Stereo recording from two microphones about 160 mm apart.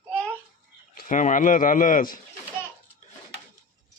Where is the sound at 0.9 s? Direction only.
55° left (ahead or behind).